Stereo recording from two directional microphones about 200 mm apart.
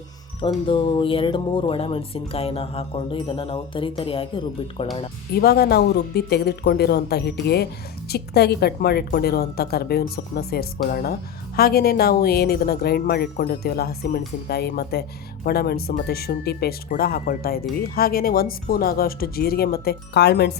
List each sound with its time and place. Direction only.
0.4 s speech: 25° left (ahead or behind)
5.3 s speech: 50° left (ahead or behind)